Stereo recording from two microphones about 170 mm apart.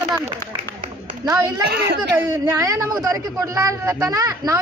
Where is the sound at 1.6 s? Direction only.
70° right (ahead or behind).